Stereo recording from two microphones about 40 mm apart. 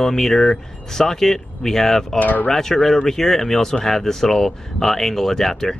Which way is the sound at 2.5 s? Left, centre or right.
Centre.